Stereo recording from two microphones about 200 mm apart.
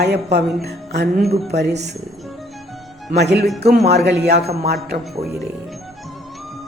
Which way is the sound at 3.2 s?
55° right (ahead or behind).